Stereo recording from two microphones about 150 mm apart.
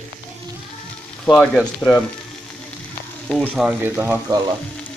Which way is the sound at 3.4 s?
5° right (ahead or behind).